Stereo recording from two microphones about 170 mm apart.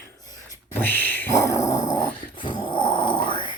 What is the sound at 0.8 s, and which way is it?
Dog, 10° left (ahead or behind).